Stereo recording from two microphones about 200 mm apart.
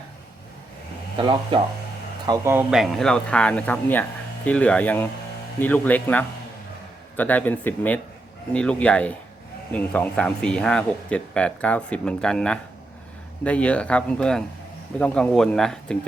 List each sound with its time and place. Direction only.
1.2 s speech: 25° right (ahead or behind); by 16.0 s 5° left (ahead or behind)